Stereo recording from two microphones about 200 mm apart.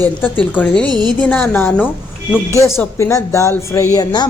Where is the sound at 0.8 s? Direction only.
20° right (ahead or behind).